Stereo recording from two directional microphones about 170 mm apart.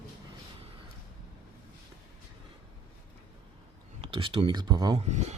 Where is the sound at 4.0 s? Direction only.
30° right (ahead or behind).